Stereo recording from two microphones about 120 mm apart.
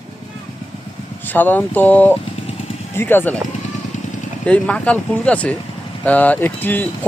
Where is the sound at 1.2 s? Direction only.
15° left (ahead or behind).